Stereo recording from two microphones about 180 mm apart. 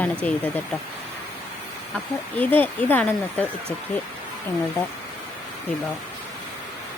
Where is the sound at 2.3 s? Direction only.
10° left (ahead or behind).